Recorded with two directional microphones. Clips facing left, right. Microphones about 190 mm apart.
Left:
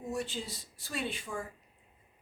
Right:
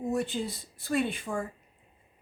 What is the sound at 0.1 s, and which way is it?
Speech, 55° right (ahead or behind).